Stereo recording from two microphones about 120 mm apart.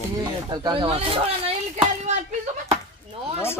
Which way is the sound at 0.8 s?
55° right (ahead or behind).